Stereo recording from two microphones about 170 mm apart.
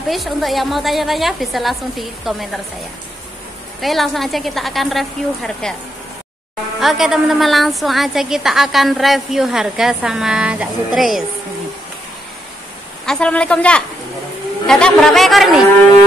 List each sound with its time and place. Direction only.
0.1 s a woman's voice: centre (ahead or behind)
3.8 s a woman's voice: centre (ahead or behind)
6.8 s a woman's voice: centre (ahead or behind)
13.0 s a woman's voice: 5° left (ahead or behind)